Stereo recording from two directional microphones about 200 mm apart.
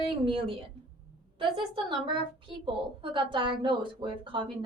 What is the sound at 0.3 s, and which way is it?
A woman's voice, 25° right (ahead or behind).